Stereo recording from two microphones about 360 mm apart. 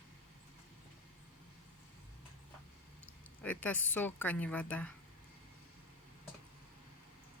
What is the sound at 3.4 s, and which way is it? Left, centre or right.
A woman's voice, centre.